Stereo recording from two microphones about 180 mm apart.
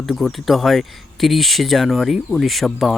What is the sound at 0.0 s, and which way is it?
Speech, centre (ahead or behind).